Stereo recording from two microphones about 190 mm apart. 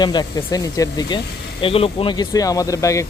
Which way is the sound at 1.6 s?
30° left (ahead or behind).